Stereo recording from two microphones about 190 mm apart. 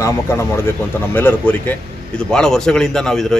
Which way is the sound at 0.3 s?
10° left (ahead or behind).